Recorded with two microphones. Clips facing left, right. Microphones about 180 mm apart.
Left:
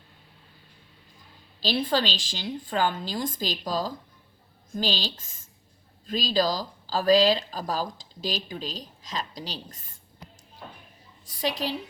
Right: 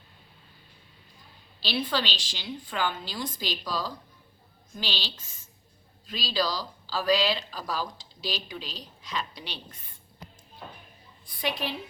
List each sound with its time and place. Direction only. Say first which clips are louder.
1.6 s speech: left 4 dB; 45° left (ahead or behind)